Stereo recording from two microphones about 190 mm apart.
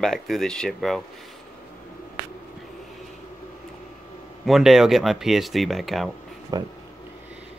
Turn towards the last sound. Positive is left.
turn(degrees=-20)  # may be behind; listen again after turning